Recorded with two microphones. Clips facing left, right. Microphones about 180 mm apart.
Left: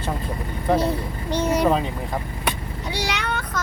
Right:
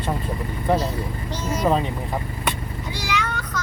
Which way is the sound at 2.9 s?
70° left (ahead or behind).